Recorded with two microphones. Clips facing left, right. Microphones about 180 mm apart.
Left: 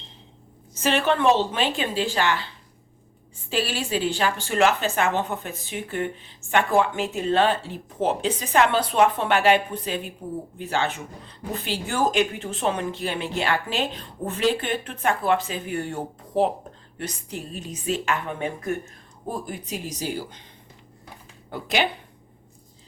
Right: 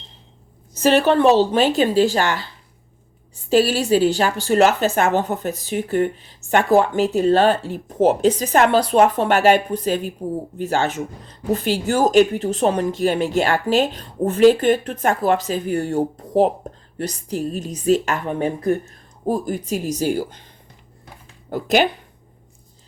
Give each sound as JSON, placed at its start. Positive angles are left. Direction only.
{"t": 0.7, "sound": "a woman's voice", "side_deg": -40}
{"t": 3.5, "sound": "a woman's voice", "side_deg": -40}
{"t": 21.5, "sound": "speech", "side_deg": -45}